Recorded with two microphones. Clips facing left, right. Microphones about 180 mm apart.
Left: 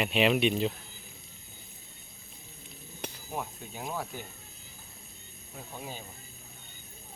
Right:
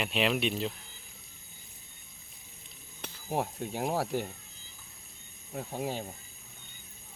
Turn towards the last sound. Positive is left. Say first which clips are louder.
# right 8 dB
turn(degrees=-70)  # may be behind; listen again after turning